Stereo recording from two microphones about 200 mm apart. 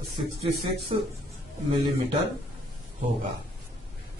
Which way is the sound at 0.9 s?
30° right (ahead or behind).